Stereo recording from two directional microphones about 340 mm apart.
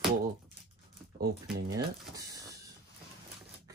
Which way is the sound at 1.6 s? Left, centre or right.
Centre.